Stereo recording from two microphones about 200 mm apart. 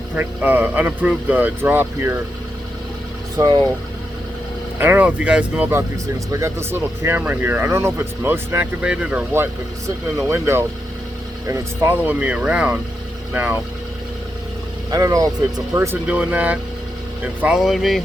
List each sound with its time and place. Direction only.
0.2 s speech: 10° right (ahead or behind)
3.3 s speech: 15° right (ahead or behind)
4.8 s speech: 10° right (ahead or behind)
14.8 s speech: 15° right (ahead or behind); by 18.0 s centre (ahead or behind)